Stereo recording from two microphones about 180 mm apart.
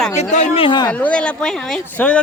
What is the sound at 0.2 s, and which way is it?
Speech, 40° left (ahead or behind).